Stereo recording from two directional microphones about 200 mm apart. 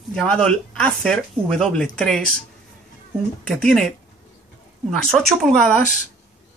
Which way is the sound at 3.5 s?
5° left (ahead or behind).